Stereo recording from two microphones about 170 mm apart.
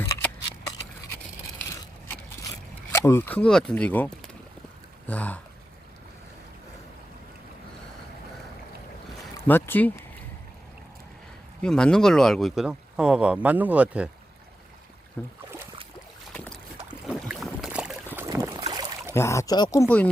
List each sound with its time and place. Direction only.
0.0 s a sound: 15° left (ahead or behind)
1.7 s a sound: 20° left (ahead or behind)
2.9 s speech: 15° left (ahead or behind)
9.5 s speech: 10° left (ahead or behind)
11.6 s speech: 5° left (ahead or behind)
15.2 s speech: 10° left (ahead or behind)
16.3 s boat: 10° left (ahead or behind)
17.1 s boat: 5° right (ahead or behind); by 19.1 s 25° right (ahead or behind)
19.1 s speech: 15° left (ahead or behind)